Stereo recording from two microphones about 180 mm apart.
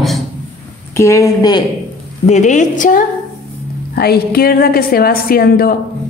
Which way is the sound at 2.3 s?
40° left (ahead or behind).